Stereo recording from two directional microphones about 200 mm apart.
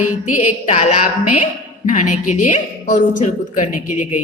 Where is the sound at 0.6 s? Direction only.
35° left (ahead or behind).